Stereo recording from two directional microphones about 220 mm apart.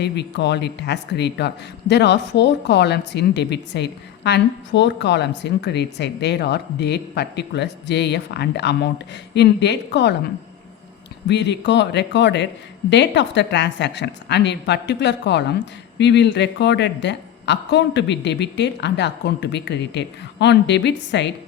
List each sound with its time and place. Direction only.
0.0 s a woman's voice: 50° left (ahead or behind)
11.3 s a woman's voice: 50° left (ahead or behind)